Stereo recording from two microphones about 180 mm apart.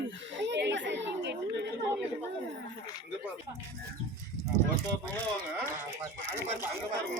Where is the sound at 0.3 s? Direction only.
80° right.